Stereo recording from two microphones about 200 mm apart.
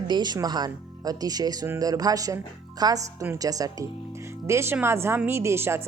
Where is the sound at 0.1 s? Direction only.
20° right (ahead or behind).